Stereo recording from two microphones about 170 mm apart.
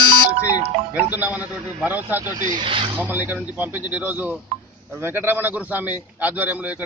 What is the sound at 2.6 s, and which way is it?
Speech, 30° right (ahead or behind).